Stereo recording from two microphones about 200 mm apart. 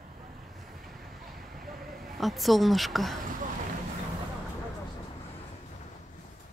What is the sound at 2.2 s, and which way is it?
A woman's voice, centre (ahead or behind).